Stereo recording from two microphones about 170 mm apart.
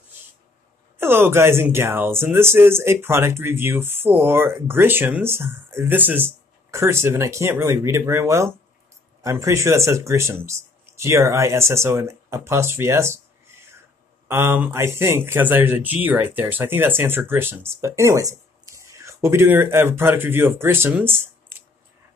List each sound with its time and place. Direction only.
0.9 s speech: 15° right (ahead or behind)
14.2 s speech: 15° right (ahead or behind)